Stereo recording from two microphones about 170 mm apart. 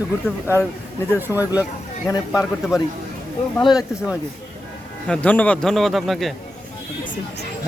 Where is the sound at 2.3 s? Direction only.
5° right (ahead or behind).